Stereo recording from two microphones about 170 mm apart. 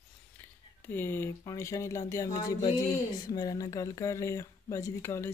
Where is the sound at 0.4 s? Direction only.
10° left (ahead or behind).